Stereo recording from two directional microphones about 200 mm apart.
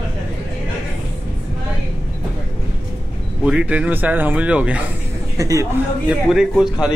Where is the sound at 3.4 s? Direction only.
5° right (ahead or behind).